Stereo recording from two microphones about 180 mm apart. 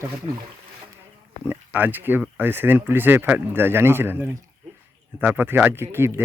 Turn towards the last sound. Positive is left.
turn(degrees=-15)  # may be behind; listen again after turning